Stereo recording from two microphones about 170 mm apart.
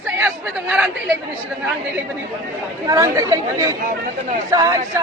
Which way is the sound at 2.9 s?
20° right (ahead or behind).